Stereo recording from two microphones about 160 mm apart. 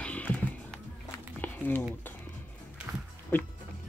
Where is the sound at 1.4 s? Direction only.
10° left (ahead or behind).